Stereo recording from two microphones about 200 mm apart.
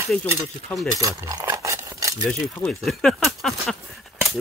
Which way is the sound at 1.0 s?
15° right (ahead or behind).